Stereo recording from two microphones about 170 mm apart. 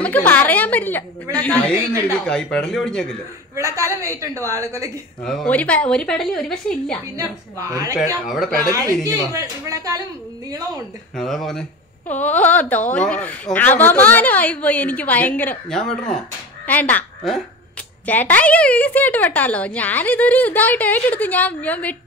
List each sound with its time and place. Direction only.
0.0 s a woman's voice: 10° left (ahead or behind)
3.5 s a woman's voice: 20° right (ahead or behind)
5.2 s a woman's voice: 5° left (ahead or behind)
7.2 s speech: 20° right (ahead or behind)
8.3 s a woman's voice: centre (ahead or behind)
8.6 s speech: 20° right (ahead or behind)
11.1 s a woman's voice: centre (ahead or behind)